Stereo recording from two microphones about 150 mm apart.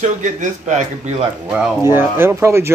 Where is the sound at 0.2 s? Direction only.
55° right (ahead or behind).